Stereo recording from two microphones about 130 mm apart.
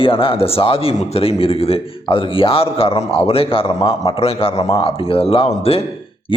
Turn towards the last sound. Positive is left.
turn(degrees=50)  # may be behind; listen again after turning